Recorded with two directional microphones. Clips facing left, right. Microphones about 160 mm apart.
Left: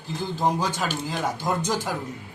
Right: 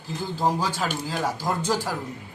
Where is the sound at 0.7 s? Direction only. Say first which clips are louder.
Even; 5° right (ahead or behind).